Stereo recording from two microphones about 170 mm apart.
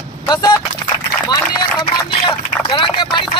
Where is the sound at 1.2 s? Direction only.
25° left (ahead or behind).